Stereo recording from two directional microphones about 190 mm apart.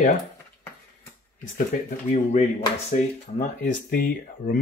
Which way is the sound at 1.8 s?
40° left (ahead or behind).